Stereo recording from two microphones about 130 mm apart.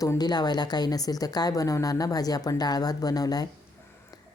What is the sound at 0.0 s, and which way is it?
A woman's voice, 30° left (ahead or behind).